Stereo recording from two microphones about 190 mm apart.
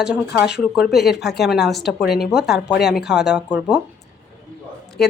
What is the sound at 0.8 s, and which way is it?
Speech, 60° left (ahead or behind).